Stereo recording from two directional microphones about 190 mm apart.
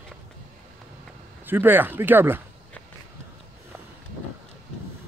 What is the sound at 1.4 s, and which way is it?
Speech, 10° right (ahead or behind).